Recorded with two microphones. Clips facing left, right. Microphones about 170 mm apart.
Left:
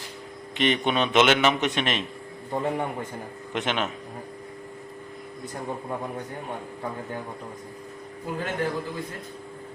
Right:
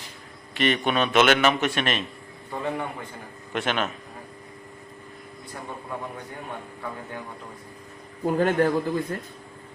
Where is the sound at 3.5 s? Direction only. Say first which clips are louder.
Right 1 dB; 20° left (ahead or behind).